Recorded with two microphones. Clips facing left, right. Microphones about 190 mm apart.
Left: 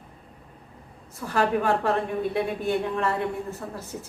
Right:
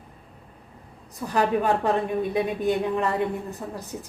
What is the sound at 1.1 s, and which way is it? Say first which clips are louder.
A woman's voice: right 1 dB; 15° right (ahead or behind).